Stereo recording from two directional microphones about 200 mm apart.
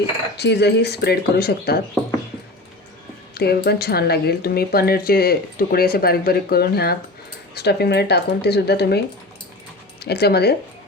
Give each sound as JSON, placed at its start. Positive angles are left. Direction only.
{"t": 0.3, "sound": "speech", "side_deg": 55}
{"t": 3.3, "sound": "speech", "side_deg": 50}
{"t": 10.0, "sound": "speech", "side_deg": 55}